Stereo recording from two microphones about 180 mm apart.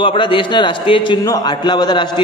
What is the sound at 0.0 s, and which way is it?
A man's voice, 30° left (ahead or behind).